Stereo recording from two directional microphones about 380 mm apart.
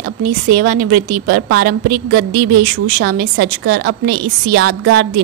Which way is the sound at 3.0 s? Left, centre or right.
Right.